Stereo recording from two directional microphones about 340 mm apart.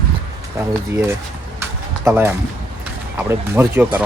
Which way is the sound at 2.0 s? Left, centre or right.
Centre.